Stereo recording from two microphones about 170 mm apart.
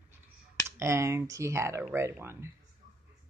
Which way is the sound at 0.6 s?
15° right (ahead or behind).